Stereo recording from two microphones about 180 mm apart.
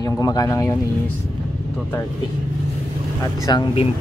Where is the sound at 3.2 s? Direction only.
20° left (ahead or behind).